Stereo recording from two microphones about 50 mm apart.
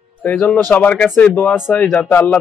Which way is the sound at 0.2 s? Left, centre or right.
Left.